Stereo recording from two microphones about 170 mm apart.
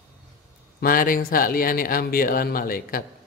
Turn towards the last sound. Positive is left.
turn(degrees=55)  # may be behind; listen again after turning